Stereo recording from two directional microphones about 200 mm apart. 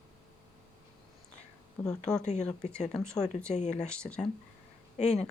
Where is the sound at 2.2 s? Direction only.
35° left (ahead or behind).